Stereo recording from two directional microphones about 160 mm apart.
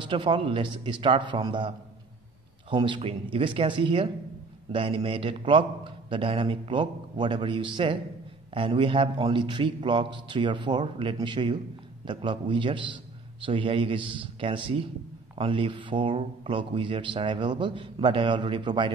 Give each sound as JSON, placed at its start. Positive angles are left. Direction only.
{"t": 0.0, "sound": "a man's voice", "side_deg": -30}
{"t": 2.7, "sound": "a man's voice", "side_deg": -30}